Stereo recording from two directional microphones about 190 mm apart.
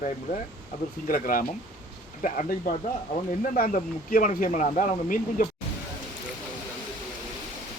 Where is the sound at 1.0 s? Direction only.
50° left (ahead or behind).